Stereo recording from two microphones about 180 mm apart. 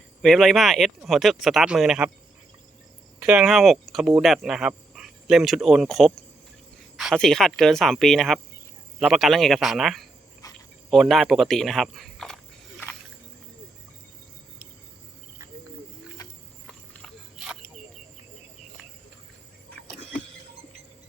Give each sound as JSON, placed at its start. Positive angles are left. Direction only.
{"t": 0.2, "sound": "speech", "side_deg": 0}
{"t": 3.2, "sound": "speech", "side_deg": 0}
{"t": 10.4, "sound": "dog", "side_deg": 20}
{"t": 10.9, "sound": "speech", "side_deg": 0}
{"t": 17.3, "sound": "a sound", "side_deg": -5}